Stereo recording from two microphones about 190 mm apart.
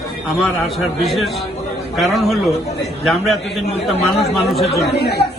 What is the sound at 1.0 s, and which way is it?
A man's voice, centre (ahead or behind).